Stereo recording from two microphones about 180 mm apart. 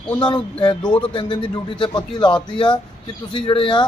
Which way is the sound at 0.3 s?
25° left (ahead or behind).